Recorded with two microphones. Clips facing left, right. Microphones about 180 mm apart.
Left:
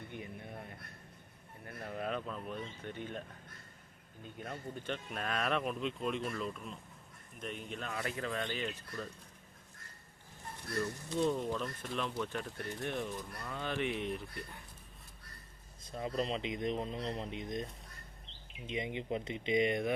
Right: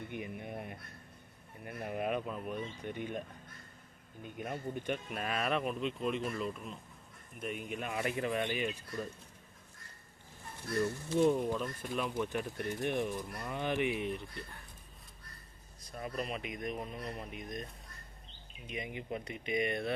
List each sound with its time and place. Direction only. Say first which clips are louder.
0.1 s a sound: right 4 dB; 15° right (ahead or behind)
1.6 s speech: right 4 dB; 15° right (ahead or behind)
11.3 s speech: right 2 dB; 5° right (ahead or behind)
15.8 s speech: left 3 dB; 20° left (ahead or behind)